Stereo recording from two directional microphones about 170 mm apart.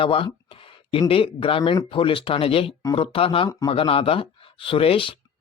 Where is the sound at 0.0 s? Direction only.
30° left (ahead or behind).